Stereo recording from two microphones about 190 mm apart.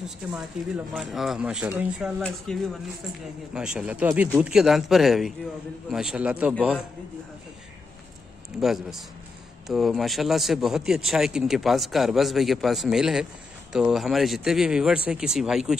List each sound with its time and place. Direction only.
0.3 s speech: 5° right (ahead or behind)
8.5 s speech: centre (ahead or behind)